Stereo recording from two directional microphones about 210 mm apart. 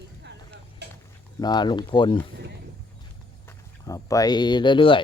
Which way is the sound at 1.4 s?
20° left (ahead or behind).